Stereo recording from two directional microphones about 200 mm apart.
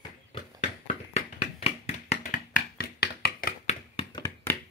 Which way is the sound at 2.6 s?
55° left (ahead or behind).